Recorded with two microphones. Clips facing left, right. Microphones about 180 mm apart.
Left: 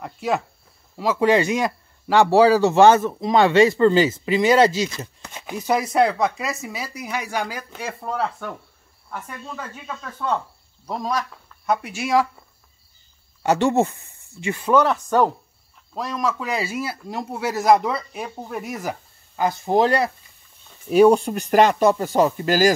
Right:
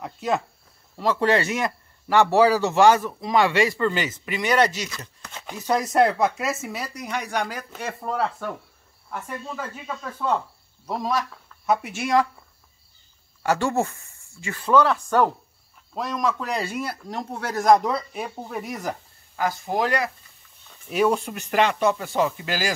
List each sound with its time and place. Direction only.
0.0 s speech: centre (ahead or behind); by 5.4 s 25° left (ahead or behind)
5.4 s speech: 10° left (ahead or behind)
13.4 s speech: 20° left (ahead or behind)
15.9 s speech: centre (ahead or behind)
19.3 s speech: 25° left (ahead or behind); by 22.7 s 40° left (ahead or behind)